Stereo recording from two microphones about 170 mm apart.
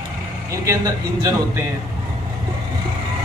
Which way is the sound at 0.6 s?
20° right (ahead or behind).